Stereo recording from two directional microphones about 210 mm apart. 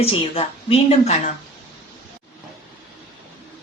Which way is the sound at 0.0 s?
25° left (ahead or behind).